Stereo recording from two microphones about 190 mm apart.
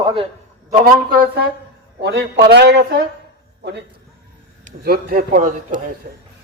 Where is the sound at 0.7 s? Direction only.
50° right (ahead or behind).